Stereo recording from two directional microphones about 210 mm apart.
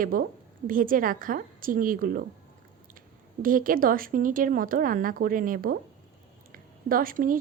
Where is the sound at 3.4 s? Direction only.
40° right (ahead or behind).